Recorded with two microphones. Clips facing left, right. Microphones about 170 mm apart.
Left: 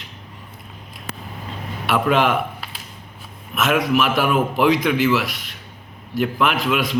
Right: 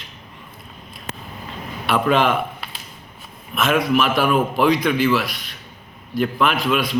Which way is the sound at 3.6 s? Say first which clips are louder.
Even; 15° left (ahead or behind).